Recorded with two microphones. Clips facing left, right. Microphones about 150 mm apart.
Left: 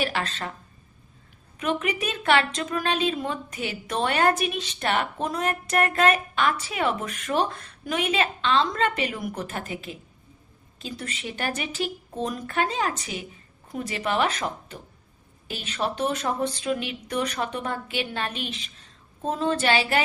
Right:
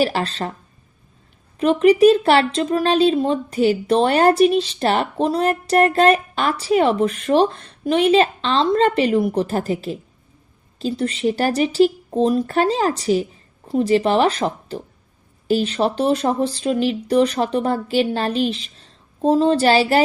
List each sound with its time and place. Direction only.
0.0 s speech: 35° right (ahead or behind)
1.5 s speech: 35° right (ahead or behind)